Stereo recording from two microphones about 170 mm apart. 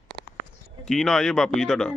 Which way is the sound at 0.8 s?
Centre (ahead or behind).